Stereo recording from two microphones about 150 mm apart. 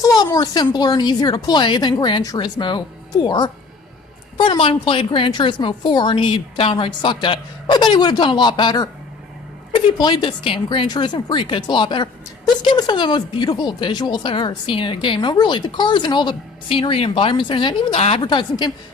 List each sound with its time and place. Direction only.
0.0 s a sound: 25° left (ahead or behind)
0.3 s a woman's voice: 25° left (ahead or behind)
18.2 s a woman's voice: 30° left (ahead or behind)